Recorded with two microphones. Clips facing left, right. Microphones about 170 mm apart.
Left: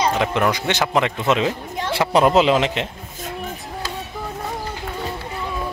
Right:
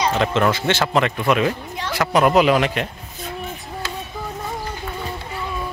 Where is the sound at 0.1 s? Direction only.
15° left (ahead or behind).